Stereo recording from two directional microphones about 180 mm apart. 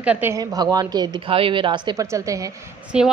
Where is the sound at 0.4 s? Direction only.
20° right (ahead or behind).